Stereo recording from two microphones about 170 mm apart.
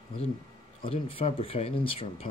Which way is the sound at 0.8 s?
35° left (ahead or behind).